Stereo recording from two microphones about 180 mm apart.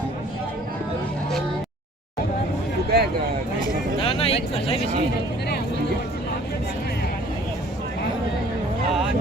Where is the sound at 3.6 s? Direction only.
30° left (ahead or behind).